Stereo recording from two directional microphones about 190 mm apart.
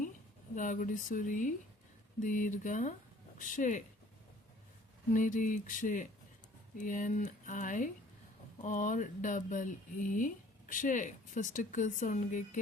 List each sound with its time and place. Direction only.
0.5 s speech: 45° left (ahead or behind)
5.1 s speech: 45° left (ahead or behind)